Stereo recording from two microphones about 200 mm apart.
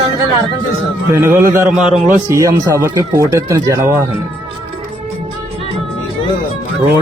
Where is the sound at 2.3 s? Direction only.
15° right (ahead or behind).